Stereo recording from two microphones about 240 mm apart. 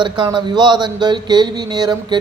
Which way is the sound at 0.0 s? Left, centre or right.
Centre.